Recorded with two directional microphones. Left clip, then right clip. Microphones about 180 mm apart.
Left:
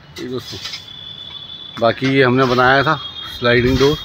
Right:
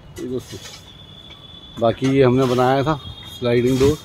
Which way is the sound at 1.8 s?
10° right (ahead or behind).